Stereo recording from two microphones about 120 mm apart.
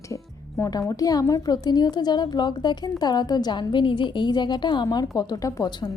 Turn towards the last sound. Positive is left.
turn(degrees=30)  # may be behind; listen again after turning